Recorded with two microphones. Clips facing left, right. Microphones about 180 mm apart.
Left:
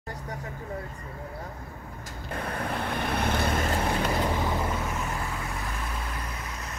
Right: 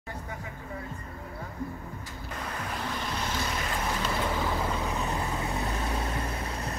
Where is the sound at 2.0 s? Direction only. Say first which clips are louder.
Left 6 dB; 55° left (ahead or behind).